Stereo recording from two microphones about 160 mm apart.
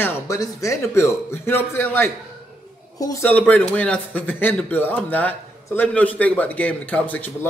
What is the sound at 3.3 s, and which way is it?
Speech, 10° left (ahead or behind).